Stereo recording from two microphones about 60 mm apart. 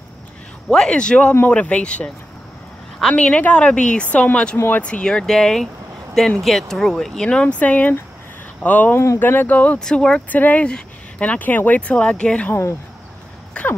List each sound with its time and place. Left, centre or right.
0.7 s speech: centre
8.9 s speech: left
9.2 s speech: left
9.8 s speech: centre
10.3 s speech: left
13.5 s throat clearing: centre